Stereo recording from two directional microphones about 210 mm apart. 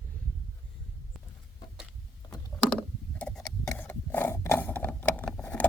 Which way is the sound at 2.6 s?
5° left (ahead or behind).